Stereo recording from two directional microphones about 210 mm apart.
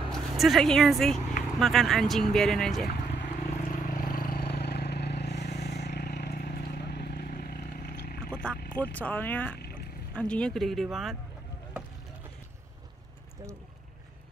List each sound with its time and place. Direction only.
0.1 s speech: centre (ahead or behind)
3.3 s vehicle: 35° left (ahead or behind); by 8.3 s 50° left (ahead or behind)
8.3 s vehicle: 5° left (ahead or behind)
8.7 s speech: 5° left (ahead or behind)